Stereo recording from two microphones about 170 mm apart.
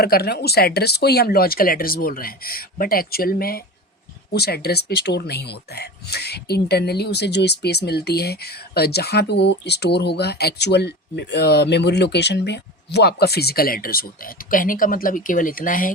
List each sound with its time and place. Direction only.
0.0 s speech: 70° left (ahead or behind)